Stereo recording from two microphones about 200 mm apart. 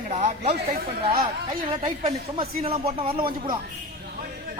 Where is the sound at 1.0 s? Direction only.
25° right (ahead or behind).